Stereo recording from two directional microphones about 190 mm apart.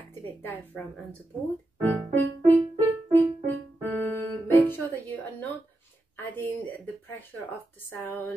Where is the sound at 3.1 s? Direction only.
10° left (ahead or behind).